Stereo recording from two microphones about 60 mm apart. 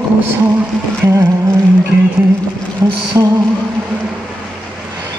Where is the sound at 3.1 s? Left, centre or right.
Right.